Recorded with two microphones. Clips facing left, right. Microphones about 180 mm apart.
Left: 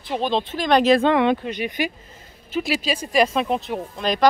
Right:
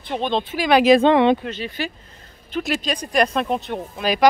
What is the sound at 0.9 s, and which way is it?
Speech, 25° right (ahead or behind).